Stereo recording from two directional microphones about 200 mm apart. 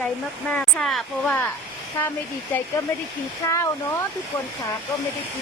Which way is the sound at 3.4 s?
15° left (ahead or behind).